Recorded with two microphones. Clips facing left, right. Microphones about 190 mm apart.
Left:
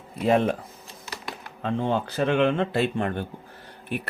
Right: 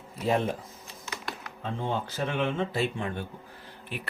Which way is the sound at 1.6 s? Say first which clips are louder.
Left 6 dB; 70° left (ahead or behind).